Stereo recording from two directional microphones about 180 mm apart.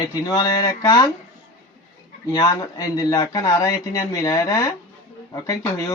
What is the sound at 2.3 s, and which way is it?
Speech, 20° left (ahead or behind).